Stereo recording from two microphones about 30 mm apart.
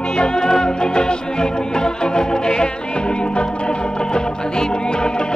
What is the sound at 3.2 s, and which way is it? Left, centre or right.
Organ, left.